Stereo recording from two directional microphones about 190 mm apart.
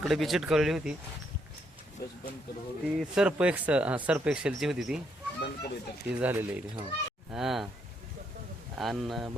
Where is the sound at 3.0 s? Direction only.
5° right (ahead or behind).